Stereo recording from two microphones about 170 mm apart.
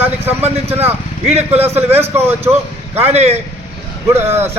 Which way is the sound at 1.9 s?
40° right (ahead or behind).